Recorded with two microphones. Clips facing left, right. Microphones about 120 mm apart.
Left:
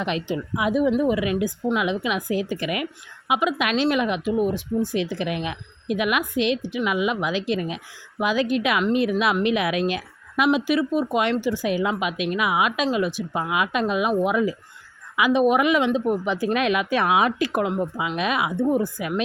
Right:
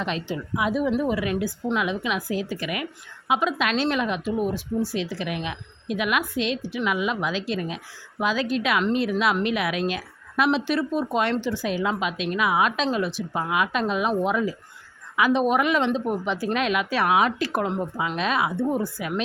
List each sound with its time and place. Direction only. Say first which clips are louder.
0.0 s a woman's voice: left 3 dB; 15° left (ahead or behind)